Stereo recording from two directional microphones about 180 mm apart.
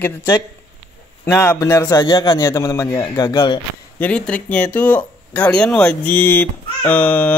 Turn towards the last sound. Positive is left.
turn(degrees=10)  # may be behind; listen again after turning